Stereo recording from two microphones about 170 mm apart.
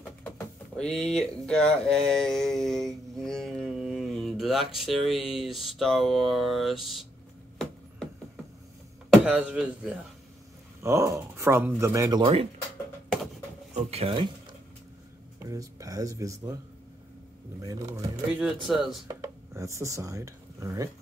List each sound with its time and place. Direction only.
0.7 s a sound: 5° left (ahead or behind)
9.1 s speech: 10° right (ahead or behind)
10.8 s speech: 15° right (ahead or behind)
13.7 s speech: 40° right (ahead or behind)
15.5 s speech: 20° right (ahead or behind)
18.3 s a sound: 5° right (ahead or behind)
19.0 s speech: 20° right (ahead or behind)